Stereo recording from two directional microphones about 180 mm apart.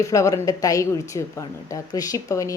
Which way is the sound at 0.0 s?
20° left (ahead or behind).